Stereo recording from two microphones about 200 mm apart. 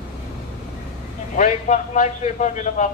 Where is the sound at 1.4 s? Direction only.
40° left (ahead or behind).